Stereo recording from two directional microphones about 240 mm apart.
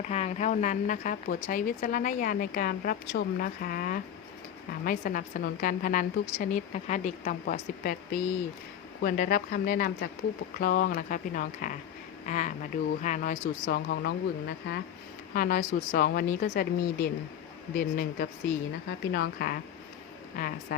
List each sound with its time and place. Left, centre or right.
0.1 s speech: left
15.4 s speech: left